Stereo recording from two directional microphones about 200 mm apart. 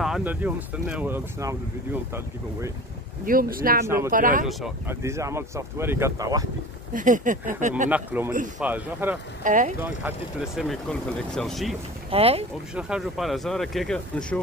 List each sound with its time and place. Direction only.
0.0 s speech: 5° right (ahead or behind)
3.3 s speech: 45° right (ahead or behind)
3.8 s speech: 15° right (ahead or behind)
4.1 s speech: 45° right (ahead or behind)
4.8 s speech: 15° right (ahead or behind)
6.9 s speech: 40° right (ahead or behind)
7.9 s speech: 10° right (ahead or behind)
9.4 s speech: 40° right (ahead or behind)
9.8 s speech: 10° right (ahead or behind)
12.1 s speech: 30° right (ahead or behind)
12.7 s speech: 5° right (ahead or behind)